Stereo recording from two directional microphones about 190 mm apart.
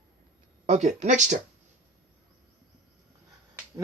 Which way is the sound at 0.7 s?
40° right (ahead or behind).